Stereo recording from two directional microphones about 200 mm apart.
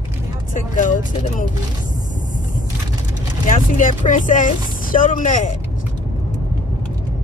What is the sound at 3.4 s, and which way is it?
Speech, 40° left (ahead or behind).